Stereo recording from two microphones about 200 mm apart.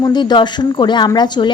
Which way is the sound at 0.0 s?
20° left (ahead or behind).